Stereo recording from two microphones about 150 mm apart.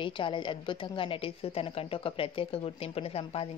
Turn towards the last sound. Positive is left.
turn(degrees=40)  # may be behind; listen again after turning